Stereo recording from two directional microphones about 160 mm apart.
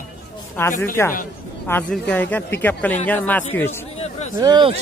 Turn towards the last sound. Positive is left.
turn(degrees=-30)  # may be behind; listen again after turning